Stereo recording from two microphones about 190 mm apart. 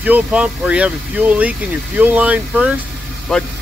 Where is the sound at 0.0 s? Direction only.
5° right (ahead or behind).